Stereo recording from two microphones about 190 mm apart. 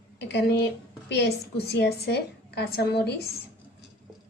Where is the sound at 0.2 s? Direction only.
60° left (ahead or behind).